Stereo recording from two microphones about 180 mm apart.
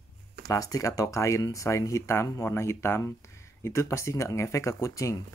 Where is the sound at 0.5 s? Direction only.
20° left (ahead or behind).